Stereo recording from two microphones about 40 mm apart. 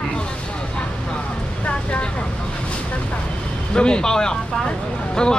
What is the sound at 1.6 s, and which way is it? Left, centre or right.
Speech, left.